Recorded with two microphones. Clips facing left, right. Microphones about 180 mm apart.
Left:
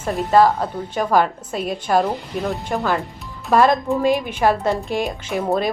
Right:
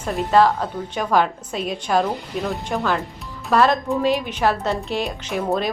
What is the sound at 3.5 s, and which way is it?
Speech, 15° left (ahead or behind).